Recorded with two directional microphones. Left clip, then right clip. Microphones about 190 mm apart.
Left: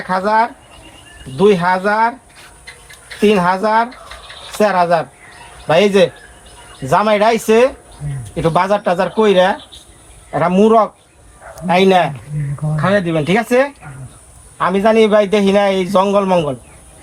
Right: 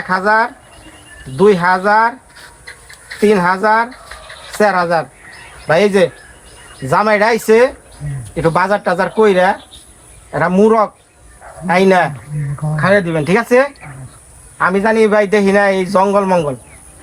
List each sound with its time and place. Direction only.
0.1 s a man's voice: 15° right (ahead or behind)
3.2 s a man's voice: 20° right (ahead or behind)